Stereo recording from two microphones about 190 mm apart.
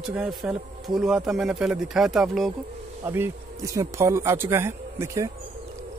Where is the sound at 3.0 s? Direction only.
15° right (ahead or behind).